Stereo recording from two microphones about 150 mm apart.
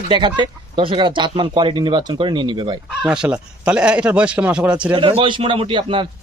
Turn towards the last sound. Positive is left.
turn(degrees=-35)  # may be behind; listen again after turning